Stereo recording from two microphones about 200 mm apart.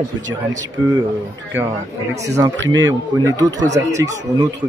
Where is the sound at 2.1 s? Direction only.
15° right (ahead or behind).